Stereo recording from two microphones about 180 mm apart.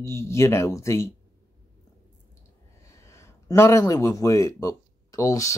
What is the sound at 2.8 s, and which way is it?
Speech, 15° left (ahead or behind).